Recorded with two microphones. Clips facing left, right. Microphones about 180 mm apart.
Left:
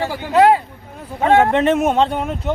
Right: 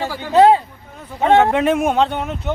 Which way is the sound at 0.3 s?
25° right (ahead or behind).